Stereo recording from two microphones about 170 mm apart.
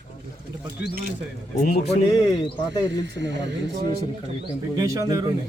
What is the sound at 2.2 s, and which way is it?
Speech, 25° left (ahead or behind).